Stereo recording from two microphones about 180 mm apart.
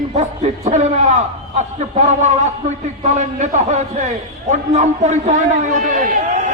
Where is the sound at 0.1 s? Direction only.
40° right (ahead or behind).